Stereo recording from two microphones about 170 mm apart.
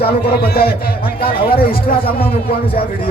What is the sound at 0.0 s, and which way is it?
A man's voice, 65° left (ahead or behind).